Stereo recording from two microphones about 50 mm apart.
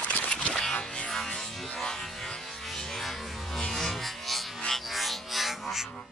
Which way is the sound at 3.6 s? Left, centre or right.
Centre.